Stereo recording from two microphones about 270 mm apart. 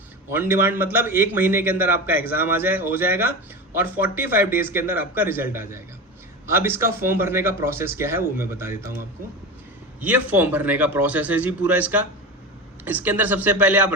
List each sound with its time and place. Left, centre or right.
0.3 s a man's voice: centre
2.1 s a man's voice: left
3.8 s a man's voice: centre
10.0 s a man's voice: centre